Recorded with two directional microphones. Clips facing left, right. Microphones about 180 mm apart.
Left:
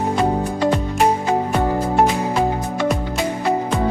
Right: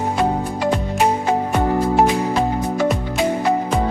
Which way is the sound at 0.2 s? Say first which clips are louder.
Left 1 dB; centre (ahead or behind).